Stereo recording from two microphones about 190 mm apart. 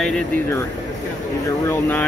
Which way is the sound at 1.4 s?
15° left (ahead or behind).